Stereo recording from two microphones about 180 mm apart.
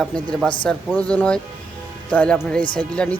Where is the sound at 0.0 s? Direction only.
5° left (ahead or behind).